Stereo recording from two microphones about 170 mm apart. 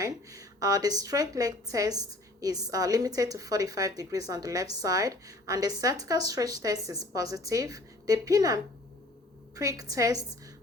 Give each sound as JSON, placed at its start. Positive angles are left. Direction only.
{"t": 0.0, "sound": "a woman's voice", "side_deg": -20}